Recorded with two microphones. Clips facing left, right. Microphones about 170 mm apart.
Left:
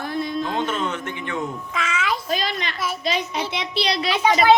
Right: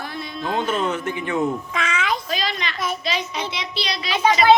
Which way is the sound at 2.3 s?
50° left (ahead or behind).